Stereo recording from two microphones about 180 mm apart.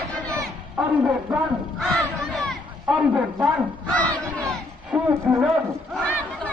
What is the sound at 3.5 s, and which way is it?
Battle cry, 5° left (ahead or behind).